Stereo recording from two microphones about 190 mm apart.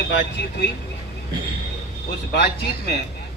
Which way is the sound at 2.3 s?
60° left (ahead or behind).